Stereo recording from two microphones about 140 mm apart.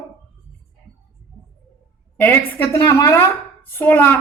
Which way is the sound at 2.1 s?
15° left (ahead or behind).